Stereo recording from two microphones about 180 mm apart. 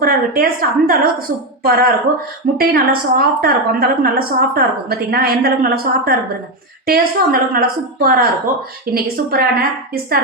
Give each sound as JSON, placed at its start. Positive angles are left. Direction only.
{"t": 0.0, "sound": "a woman's voice", "side_deg": -55}